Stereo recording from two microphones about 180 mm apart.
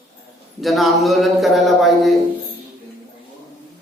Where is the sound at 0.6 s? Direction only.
Centre (ahead or behind).